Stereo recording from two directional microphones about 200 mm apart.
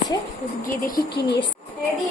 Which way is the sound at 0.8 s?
45° left (ahead or behind).